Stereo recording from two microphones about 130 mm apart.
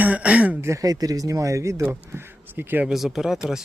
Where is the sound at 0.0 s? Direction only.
10° right (ahead or behind).